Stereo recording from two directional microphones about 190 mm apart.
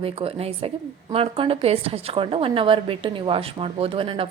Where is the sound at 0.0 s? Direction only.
30° right (ahead or behind).